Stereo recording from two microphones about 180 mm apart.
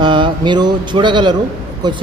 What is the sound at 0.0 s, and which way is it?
Speech, 25° right (ahead or behind).